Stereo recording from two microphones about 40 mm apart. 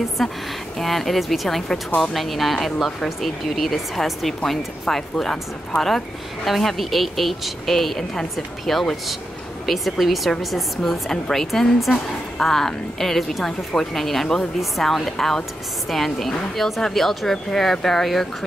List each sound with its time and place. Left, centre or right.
0.2 s a woman's voice: centre
10.8 s a woman's voice: centre